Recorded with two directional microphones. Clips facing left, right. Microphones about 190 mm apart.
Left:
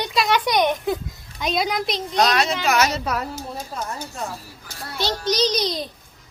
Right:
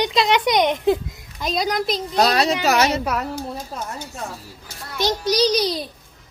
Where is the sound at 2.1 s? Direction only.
35° right (ahead or behind).